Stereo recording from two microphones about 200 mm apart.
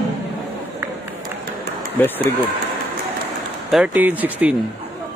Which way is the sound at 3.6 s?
5° right (ahead or behind).